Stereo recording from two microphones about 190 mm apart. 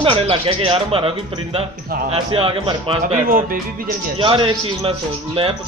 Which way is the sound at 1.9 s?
50° right (ahead or behind).